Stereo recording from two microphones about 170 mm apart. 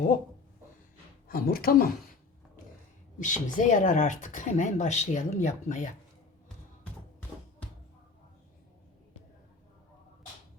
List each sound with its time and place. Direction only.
1.3 s speech: 60° left (ahead or behind)
3.2 s speech: 50° left (ahead or behind)